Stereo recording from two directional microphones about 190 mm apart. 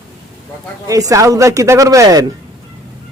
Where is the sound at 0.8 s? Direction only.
15° right (ahead or behind).